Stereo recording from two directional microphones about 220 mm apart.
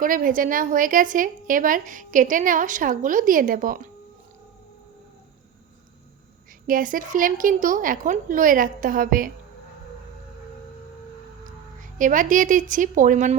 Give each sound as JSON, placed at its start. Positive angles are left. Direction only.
{"t": 0.0, "sound": "a woman's voice", "side_deg": -40}
{"t": 6.7, "sound": "a woman's voice", "side_deg": -40}
{"t": 11.8, "sound": "a woman's voice", "side_deg": -35}